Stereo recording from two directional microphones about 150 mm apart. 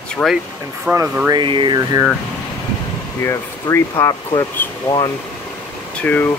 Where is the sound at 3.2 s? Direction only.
20° left (ahead or behind).